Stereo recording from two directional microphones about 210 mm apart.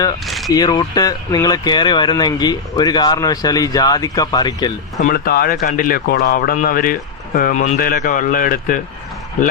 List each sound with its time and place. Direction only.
0.3 s a sound: centre (ahead or behind)
0.5 s speech: 20° left (ahead or behind)
4.9 s speech: 45° left (ahead or behind)